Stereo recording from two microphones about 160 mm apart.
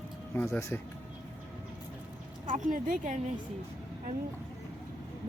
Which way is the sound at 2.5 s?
50° right (ahead or behind).